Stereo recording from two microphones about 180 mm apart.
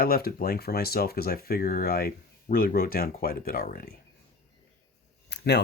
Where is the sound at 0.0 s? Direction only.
55° left (ahead or behind).